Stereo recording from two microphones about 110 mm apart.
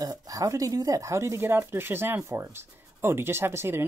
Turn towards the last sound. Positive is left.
turn(degrees=-20)  # may be behind; listen again after turning